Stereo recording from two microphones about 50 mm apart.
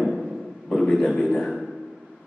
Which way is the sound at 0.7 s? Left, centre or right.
Centre.